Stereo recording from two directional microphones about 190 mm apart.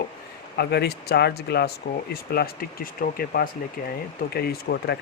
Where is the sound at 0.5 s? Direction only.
60° left (ahead or behind).